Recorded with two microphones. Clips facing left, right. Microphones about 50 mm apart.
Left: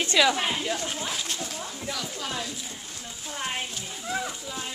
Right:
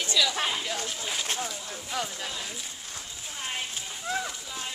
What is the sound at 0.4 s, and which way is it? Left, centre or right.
Speech, centre.